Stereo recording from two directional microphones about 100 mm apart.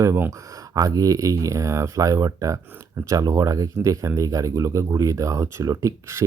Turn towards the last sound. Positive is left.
turn(degrees=-30)  # may be behind; listen again after turning